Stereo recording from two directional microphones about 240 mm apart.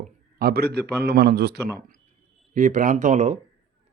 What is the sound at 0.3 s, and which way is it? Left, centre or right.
Speech, right.